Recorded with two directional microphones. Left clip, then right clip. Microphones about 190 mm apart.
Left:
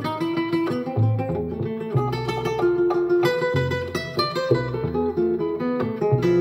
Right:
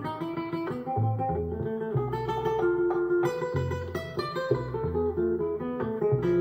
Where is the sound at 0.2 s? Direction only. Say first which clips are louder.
Left 9 dB; 30° left (ahead or behind).